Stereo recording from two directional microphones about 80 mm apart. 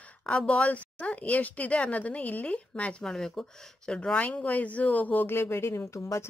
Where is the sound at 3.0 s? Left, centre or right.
Centre.